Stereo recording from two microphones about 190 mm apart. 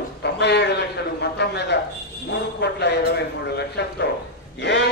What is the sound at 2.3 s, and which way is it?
A man's voice, 65° left (ahead or behind).